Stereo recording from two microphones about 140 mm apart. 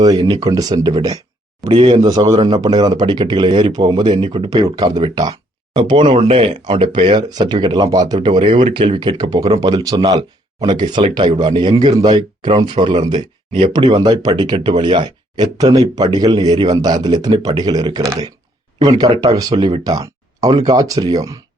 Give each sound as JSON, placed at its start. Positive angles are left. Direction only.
{"t": 0.0, "sound": "speech", "side_deg": -25}